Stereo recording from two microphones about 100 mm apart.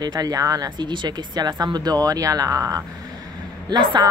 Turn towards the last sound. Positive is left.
turn(degrees=-45)  # may be behind; listen again after turning